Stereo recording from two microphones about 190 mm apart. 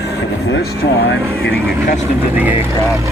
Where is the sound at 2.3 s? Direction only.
10° right (ahead or behind).